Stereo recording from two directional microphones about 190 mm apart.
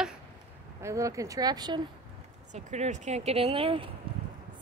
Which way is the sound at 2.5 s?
35° right (ahead or behind).